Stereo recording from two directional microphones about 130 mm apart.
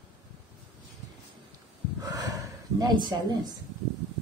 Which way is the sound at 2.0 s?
30° right (ahead or behind).